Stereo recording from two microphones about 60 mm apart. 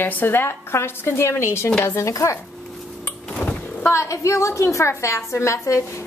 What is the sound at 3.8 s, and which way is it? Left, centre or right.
A woman's voice, left.